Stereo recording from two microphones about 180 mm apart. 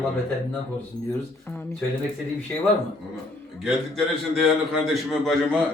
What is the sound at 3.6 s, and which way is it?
A man's voice, centre (ahead or behind).